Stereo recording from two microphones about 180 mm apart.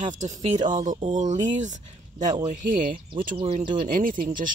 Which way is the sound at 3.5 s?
50° right (ahead or behind).